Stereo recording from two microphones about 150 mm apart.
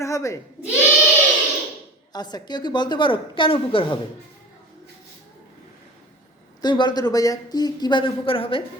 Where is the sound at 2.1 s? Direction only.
30° left (ahead or behind).